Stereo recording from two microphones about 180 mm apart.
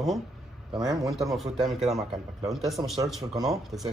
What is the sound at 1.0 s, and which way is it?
Speech, centre (ahead or behind).